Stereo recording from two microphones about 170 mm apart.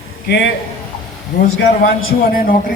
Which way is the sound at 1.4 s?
80° left.